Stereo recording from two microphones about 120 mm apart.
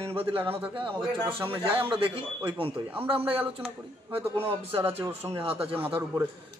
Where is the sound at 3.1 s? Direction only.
50° right (ahead or behind).